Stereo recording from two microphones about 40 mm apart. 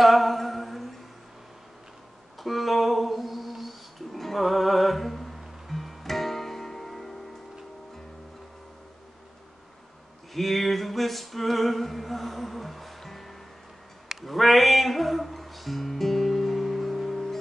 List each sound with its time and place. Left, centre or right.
0.0 s humming: centre
2.4 s music: centre
10.3 s a sound: centre
14.2 s music: centre